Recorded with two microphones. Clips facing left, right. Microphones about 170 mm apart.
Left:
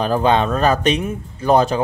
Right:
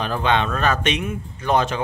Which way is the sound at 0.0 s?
40° left (ahead or behind).